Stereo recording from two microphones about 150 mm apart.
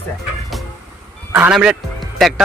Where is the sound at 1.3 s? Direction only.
10° right (ahead or behind).